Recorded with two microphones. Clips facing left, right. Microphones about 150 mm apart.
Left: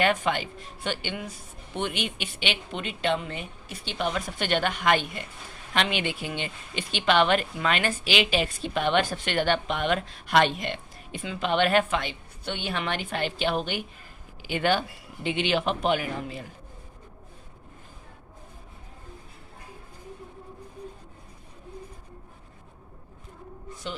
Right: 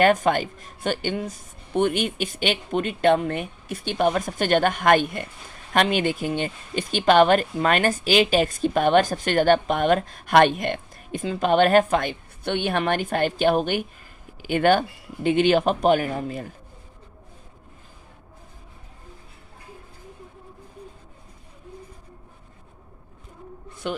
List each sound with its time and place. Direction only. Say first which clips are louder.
0.0 s speech: right 6 dB; 45° right (ahead or behind)
23.8 s speech: right 7 dB; 60° right (ahead or behind)